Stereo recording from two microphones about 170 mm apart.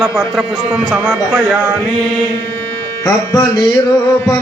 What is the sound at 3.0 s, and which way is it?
Music, 20° left (ahead or behind).